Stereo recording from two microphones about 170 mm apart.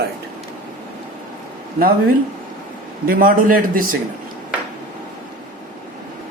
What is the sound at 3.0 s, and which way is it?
Speech, 55° right (ahead or behind).